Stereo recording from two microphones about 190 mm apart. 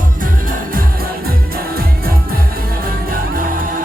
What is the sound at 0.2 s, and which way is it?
Music, 45° right (ahead or behind).